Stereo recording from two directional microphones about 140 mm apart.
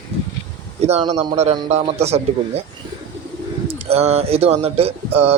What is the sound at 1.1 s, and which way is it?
Speech, 50° right (ahead or behind).